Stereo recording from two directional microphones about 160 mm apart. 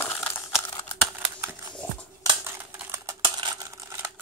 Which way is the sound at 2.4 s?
10° right (ahead or behind).